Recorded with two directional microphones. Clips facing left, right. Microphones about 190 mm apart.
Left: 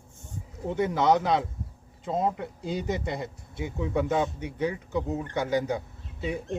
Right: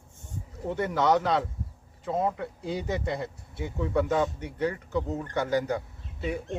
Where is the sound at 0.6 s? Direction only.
15° left (ahead or behind).